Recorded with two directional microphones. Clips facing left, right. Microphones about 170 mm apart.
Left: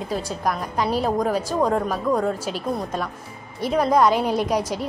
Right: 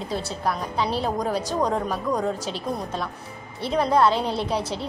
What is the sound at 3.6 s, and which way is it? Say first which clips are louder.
A woman's voice: left 2 dB; 10° left (ahead or behind).